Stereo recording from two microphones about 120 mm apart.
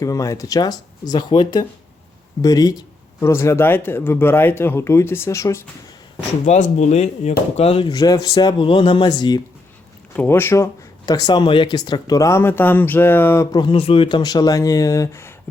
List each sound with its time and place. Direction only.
0.0 s speech: 25° left (ahead or behind)
6.4 s speech: 75° left (ahead or behind); by 9.4 s 35° left (ahead or behind)
10.2 s speech: 20° left (ahead or behind)
11.0 s speech: 35° left (ahead or behind); by 13.5 s 20° left (ahead or behind)
13.5 s speech: 40° left (ahead or behind); by 15.3 s 25° left (ahead or behind)